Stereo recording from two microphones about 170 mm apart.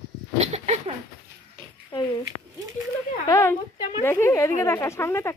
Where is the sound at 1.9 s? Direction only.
25° left (ahead or behind).